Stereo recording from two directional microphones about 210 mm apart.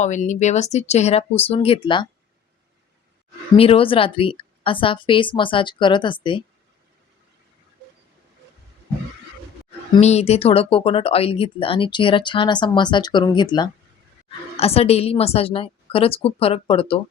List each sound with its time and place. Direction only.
0.0 s speech: 35° left (ahead or behind)
3.6 s speech: 25° left (ahead or behind)
9.9 s speech: 30° left (ahead or behind)